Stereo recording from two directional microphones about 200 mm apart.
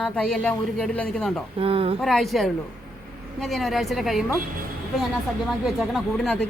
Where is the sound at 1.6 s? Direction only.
30° right (ahead or behind).